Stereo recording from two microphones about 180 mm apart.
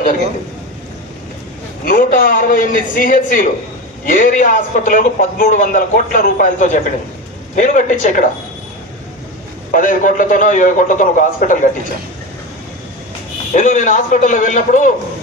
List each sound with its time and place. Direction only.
1.9 s a man's voice: 50° left (ahead or behind)
9.7 s a man's voice: 50° left (ahead or behind)
13.5 s a man's voice: 45° left (ahead or behind)